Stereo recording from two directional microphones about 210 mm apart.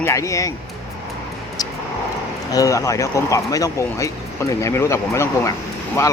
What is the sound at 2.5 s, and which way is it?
Speech, 15° left (ahead or behind).